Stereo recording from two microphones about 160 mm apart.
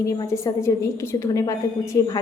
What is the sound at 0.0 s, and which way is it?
Speech, 20° left (ahead or behind).